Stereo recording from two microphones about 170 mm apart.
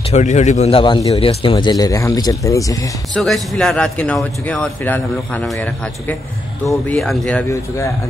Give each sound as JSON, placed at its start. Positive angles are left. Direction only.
{"t": 0.1, "sound": "a man's voice", "side_deg": 45}
{"t": 3.2, "sound": "a man's voice", "side_deg": 0}